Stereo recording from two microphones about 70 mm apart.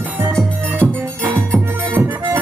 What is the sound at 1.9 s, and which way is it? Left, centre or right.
Music, right.